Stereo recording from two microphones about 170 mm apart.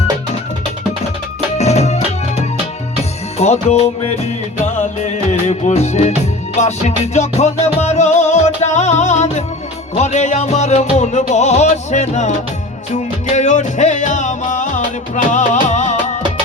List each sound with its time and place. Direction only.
1.5 s music: 40° left (ahead or behind)
3.3 s music: 40° left (ahead or behind)